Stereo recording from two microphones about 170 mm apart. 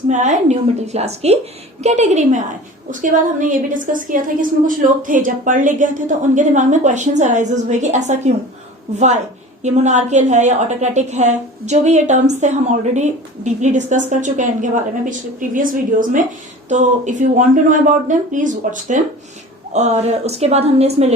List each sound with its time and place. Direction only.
0.1 s a woman's voice: 45° right (ahead or behind)